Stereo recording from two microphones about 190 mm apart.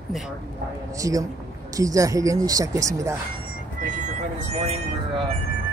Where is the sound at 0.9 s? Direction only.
15° right (ahead or behind).